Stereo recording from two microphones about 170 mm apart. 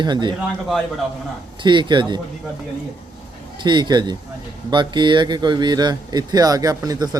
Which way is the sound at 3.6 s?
25° right (ahead or behind).